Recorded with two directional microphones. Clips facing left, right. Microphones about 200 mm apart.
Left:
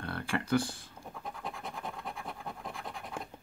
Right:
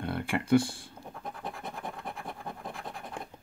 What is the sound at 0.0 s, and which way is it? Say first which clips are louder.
Speech: right 3 dB; 25° right (ahead or behind).